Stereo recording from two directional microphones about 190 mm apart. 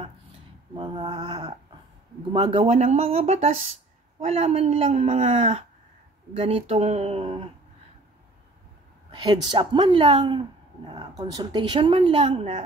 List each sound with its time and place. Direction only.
0.7 s speech: 25° right (ahead or behind)
9.1 s speech: 25° right (ahead or behind)